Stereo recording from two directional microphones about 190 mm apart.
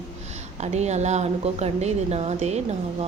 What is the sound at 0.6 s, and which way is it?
Speech, 35° right (ahead or behind).